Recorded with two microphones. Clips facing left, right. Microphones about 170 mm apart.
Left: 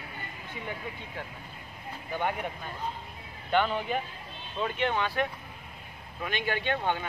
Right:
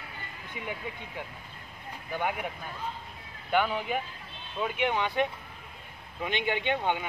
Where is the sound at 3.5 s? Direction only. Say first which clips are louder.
Even; 10° right (ahead or behind).